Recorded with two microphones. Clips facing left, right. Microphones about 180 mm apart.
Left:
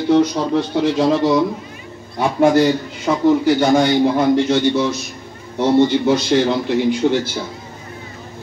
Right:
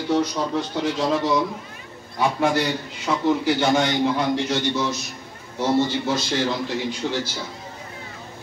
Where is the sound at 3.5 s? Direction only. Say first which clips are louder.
Left 6 dB; 35° left (ahead or behind).